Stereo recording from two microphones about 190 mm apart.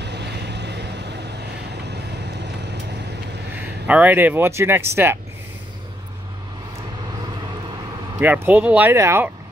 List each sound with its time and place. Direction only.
0.0 s vehicle: 65° right (ahead or behind)
3.5 s speech: 10° right (ahead or behind)
8.2 s speech: 10° right (ahead or behind)